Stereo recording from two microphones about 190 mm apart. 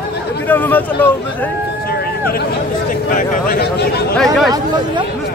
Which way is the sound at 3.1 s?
50° left (ahead or behind).